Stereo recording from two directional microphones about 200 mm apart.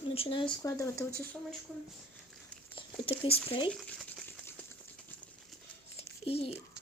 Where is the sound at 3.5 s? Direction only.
25° left (ahead or behind).